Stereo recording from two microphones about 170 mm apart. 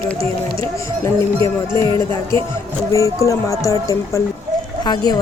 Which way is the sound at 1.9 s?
30° right (ahead or behind).